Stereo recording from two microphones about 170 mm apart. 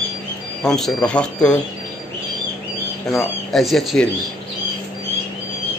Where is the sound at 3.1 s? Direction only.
Centre (ahead or behind).